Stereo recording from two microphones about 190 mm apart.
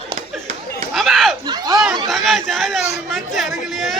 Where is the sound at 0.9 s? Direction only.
Centre (ahead or behind).